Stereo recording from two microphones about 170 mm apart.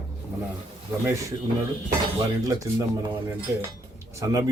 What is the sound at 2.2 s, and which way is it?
Speech, 20° right (ahead or behind).